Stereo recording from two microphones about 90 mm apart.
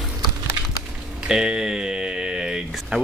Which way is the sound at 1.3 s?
10° right (ahead or behind).